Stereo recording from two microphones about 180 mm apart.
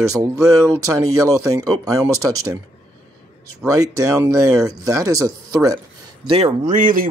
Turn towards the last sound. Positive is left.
turn(degrees=-50)  # may be behind; listen again after turning